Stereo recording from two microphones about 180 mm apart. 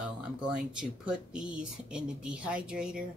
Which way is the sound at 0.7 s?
5° right (ahead or behind).